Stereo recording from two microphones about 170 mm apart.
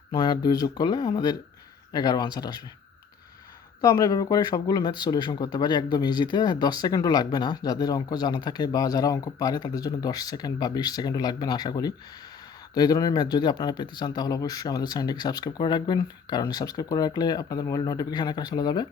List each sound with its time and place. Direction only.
0.1 s speech: 25° left (ahead or behind)
3.8 s speech: 20° left (ahead or behind)